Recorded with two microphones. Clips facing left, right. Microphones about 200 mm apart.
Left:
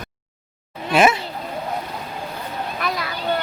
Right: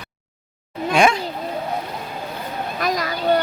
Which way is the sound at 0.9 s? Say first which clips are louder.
Left 1 dB; 5° left (ahead or behind).